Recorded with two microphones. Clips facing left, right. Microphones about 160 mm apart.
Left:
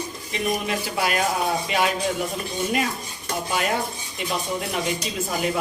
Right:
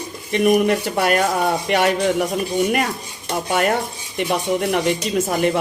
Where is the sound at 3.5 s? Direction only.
60° right (ahead or behind).